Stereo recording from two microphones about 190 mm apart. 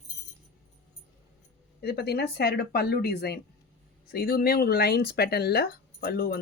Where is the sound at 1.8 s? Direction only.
60° left (ahead or behind).